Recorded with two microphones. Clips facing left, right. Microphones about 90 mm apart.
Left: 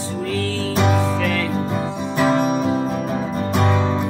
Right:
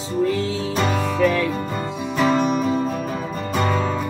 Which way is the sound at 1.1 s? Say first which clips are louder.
Right 2 dB; 10° right (ahead or behind).